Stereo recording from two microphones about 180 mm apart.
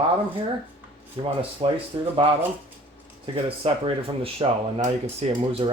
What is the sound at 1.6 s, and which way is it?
Speech, 30° right (ahead or behind).